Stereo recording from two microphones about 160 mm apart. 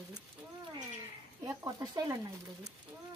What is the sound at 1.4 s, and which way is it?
Speech, 25° right (ahead or behind).